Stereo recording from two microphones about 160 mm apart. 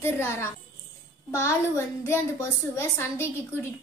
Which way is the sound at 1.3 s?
15° left (ahead or behind).